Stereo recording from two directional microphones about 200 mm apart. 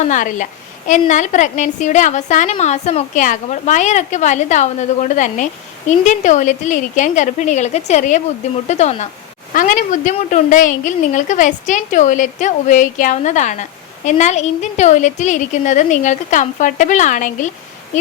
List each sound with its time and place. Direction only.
0.0 s a woman's voice: 40° left (ahead or behind)